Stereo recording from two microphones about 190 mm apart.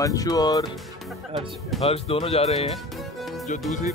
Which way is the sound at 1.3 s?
30° right (ahead or behind).